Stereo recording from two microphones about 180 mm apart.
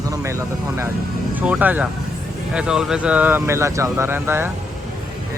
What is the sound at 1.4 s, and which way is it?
Speech, 10° right (ahead or behind).